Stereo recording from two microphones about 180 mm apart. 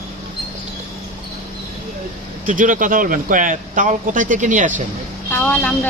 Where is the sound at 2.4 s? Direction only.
45° right (ahead or behind).